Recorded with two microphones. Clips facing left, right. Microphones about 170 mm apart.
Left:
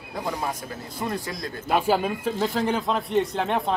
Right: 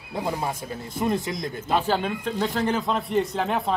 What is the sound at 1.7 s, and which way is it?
Speech, 10° left (ahead or behind).